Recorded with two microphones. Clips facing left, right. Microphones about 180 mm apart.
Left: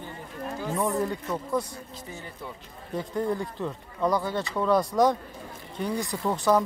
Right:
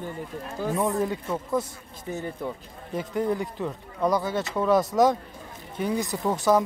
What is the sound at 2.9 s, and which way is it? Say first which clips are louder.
Speech: right 2 dB; 20° right (ahead or behind).